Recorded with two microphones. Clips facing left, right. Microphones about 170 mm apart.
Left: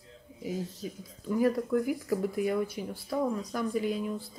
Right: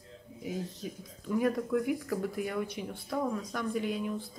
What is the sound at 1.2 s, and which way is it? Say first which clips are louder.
Speech: left 2 dB; centre (ahead or behind).